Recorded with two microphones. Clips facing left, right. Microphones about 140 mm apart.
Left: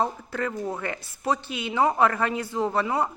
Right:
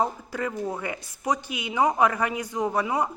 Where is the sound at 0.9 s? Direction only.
15° right (ahead or behind).